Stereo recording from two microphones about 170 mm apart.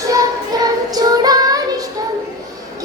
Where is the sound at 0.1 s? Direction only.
20° right (ahead or behind).